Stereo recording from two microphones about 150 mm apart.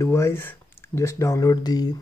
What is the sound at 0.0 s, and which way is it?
Speech, 20° left (ahead or behind).